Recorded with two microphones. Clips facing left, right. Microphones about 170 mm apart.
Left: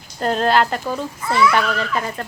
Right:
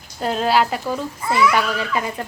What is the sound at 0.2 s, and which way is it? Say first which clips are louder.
Speech: left 1 dB; 5° right (ahead or behind).